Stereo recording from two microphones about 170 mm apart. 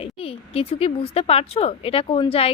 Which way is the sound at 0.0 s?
35° left (ahead or behind).